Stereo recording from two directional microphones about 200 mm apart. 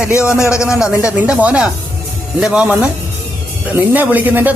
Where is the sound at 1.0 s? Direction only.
5° right (ahead or behind).